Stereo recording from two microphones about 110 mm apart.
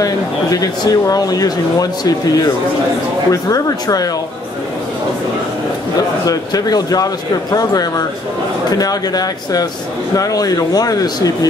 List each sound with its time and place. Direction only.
0.0 s speech: 35° left (ahead or behind)
6.2 s speech: 35° left (ahead or behind)